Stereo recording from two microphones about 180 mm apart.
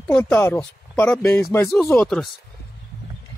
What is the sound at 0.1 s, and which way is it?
Speech, 10° left (ahead or behind).